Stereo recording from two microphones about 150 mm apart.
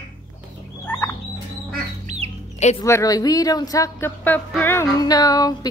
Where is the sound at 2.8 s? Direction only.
20° left (ahead or behind).